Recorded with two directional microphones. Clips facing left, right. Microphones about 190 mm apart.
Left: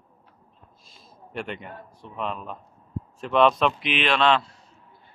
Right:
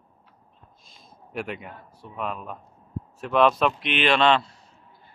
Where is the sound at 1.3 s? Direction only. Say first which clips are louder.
Right 1 dB; 5° right (ahead or behind).